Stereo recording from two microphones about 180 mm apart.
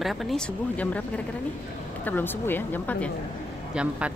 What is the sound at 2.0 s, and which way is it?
Speech, 10° left (ahead or behind).